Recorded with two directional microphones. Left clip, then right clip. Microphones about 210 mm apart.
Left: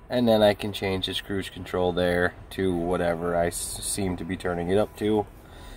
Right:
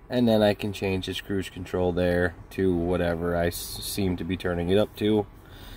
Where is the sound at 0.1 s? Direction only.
20° right (ahead or behind).